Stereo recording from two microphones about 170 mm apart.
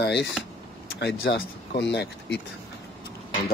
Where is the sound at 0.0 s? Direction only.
85° left.